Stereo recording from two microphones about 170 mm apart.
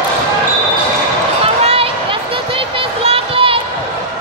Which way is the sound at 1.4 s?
35° right (ahead or behind).